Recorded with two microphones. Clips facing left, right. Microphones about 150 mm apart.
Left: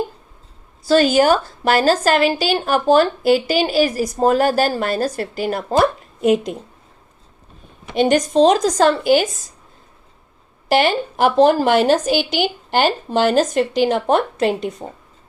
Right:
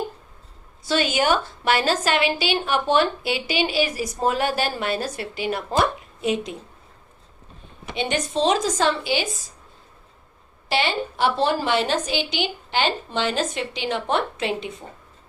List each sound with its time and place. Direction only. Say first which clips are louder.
0.9 s a woman's voice: left 8 dB; 40° left (ahead or behind)
7.9 s speech: left 10 dB; 40° left (ahead or behind)
10.7 s speech: left 7 dB; 50° left (ahead or behind)